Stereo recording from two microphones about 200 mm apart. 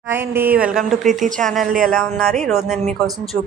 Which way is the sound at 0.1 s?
10° right (ahead or behind).